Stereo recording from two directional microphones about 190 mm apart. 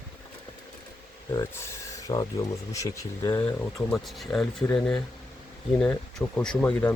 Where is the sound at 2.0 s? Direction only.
20° left (ahead or behind).